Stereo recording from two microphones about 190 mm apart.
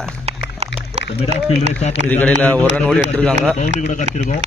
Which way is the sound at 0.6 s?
35° right (ahead or behind).